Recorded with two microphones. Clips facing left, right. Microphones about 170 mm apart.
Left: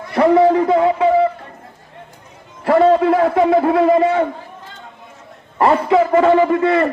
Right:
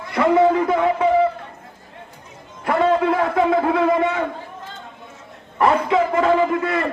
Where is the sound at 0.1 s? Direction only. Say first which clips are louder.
Left 4 dB; 30° left (ahead or behind).